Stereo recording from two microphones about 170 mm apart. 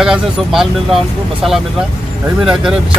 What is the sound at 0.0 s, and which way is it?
Speech, 5° right (ahead or behind).